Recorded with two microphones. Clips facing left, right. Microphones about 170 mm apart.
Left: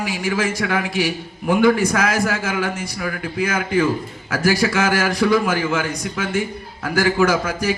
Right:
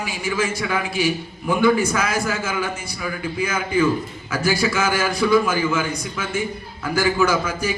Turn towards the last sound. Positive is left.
turn(degrees=90)